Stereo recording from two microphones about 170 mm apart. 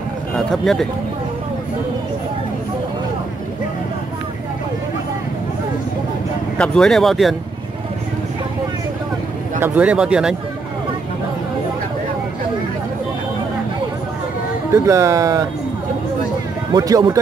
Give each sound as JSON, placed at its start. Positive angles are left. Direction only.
{"t": 0.5, "sound": "speech", "side_deg": 0}
{"t": 6.6, "sound": "speech", "side_deg": 5}
{"t": 9.6, "sound": "speech", "side_deg": -10}
{"t": 14.7, "sound": "speech", "side_deg": -15}
{"t": 16.7, "sound": "speech", "side_deg": -20}